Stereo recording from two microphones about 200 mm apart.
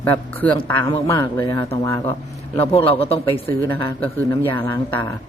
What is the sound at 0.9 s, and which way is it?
Speech, 15° left (ahead or behind).